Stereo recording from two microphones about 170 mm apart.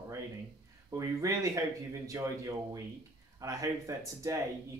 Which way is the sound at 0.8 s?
20° right (ahead or behind).